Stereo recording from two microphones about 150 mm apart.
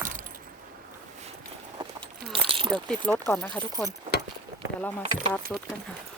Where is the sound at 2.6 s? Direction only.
5° left (ahead or behind).